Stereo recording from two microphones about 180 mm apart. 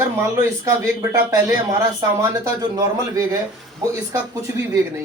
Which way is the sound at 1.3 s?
20° right (ahead or behind).